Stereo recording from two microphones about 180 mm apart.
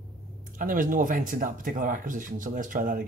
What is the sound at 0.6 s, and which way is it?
Speech, 50° right (ahead or behind).